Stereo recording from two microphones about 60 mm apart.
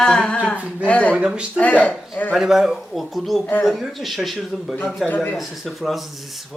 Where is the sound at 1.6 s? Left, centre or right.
Left.